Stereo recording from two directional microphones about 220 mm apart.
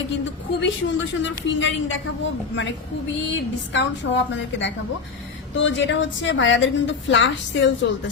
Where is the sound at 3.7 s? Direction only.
55° left (ahead or behind).